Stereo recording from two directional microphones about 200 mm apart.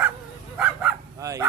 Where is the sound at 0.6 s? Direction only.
5° right (ahead or behind).